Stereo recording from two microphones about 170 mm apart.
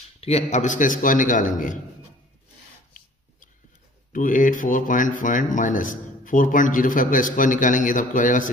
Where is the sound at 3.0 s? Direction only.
55° left (ahead or behind).